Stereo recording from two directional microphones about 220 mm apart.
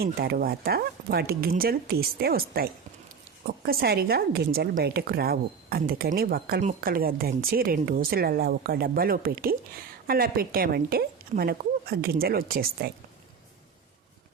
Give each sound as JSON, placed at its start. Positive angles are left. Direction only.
{"t": 0.0, "sound": "a woman's voice", "side_deg": -45}
{"t": 3.7, "sound": "a woman's voice", "side_deg": -45}